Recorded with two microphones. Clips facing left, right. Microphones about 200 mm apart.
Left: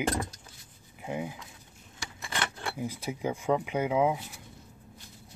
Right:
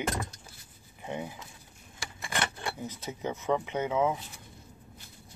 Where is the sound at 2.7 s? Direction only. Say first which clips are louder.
Left 4 dB; 10° left (ahead or behind).